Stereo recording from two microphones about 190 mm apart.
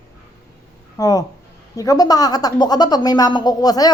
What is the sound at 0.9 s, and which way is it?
Speech, 20° left (ahead or behind).